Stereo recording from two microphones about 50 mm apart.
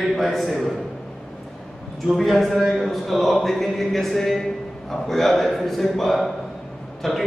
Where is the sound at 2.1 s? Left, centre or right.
Centre.